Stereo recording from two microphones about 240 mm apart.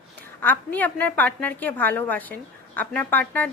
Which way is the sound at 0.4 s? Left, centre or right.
Centre.